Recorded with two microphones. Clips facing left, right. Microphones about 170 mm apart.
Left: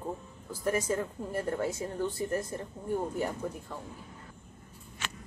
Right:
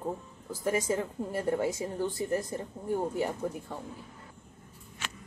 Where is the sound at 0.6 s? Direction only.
15° right (ahead or behind).